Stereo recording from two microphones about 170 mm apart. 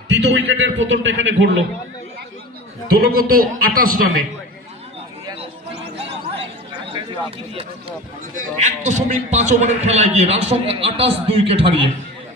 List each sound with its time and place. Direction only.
0.1 s a man's voice: 90° right
2.9 s a man's voice: 65° right (ahead or behind)
6.9 s a sound: 35° right (ahead or behind)
8.4 s a man's voice: 50° right (ahead or behind); by 11.9 s 35° right (ahead or behind)